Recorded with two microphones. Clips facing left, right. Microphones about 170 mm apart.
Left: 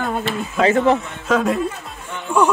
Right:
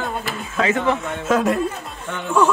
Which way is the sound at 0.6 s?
35° left (ahead or behind).